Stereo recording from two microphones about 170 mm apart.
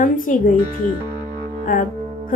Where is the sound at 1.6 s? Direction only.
55° left (ahead or behind).